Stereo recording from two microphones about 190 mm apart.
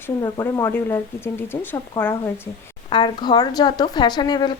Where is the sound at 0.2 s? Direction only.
15° left (ahead or behind).